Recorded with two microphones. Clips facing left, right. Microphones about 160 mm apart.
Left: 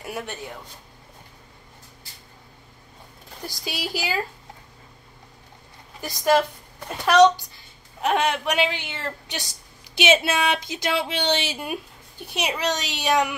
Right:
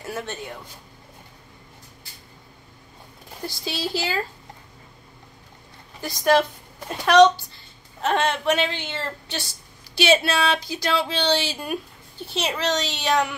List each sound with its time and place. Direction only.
0.0 s speech: 15° left (ahead or behind)
3.4 s a woman's voice: 15° left (ahead or behind)
5.9 s a woman's voice: 10° left (ahead or behind)
8.0 s a woman's voice: 10° left (ahead or behind)